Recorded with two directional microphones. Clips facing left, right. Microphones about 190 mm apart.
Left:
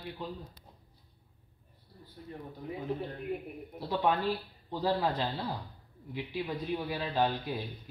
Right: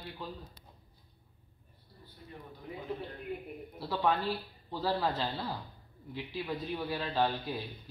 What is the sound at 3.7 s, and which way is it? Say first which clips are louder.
Speech: left 1 dB; 20° left (ahead or behind).